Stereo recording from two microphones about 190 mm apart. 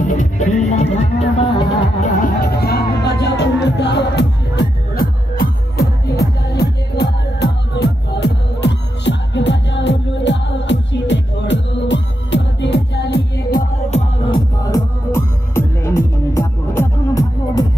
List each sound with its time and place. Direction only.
0.0 s music: 40° left (ahead or behind)
2.2 s music: 55° left (ahead or behind)
13.8 s music: 35° left (ahead or behind)
14.6 s music: 15° left (ahead or behind)